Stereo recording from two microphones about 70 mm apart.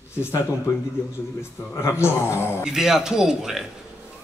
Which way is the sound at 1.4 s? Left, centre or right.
Left.